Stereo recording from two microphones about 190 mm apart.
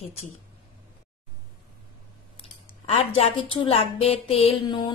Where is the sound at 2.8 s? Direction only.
30° left (ahead or behind).